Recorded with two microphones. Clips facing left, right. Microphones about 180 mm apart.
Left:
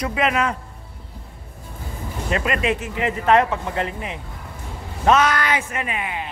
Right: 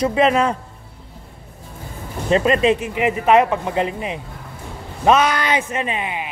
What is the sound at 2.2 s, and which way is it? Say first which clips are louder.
Speech: right 7 dB; 30° right (ahead or behind).